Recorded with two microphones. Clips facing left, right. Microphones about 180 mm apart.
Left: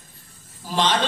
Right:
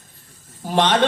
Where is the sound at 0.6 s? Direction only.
60° right (ahead or behind).